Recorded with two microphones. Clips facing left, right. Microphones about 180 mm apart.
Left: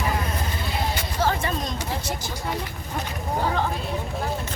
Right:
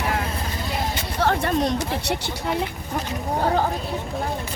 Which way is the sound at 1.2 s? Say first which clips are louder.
Right 5 dB; 60° right (ahead or behind).